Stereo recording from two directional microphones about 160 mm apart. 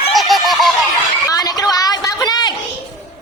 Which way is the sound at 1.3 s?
25° left (ahead or behind).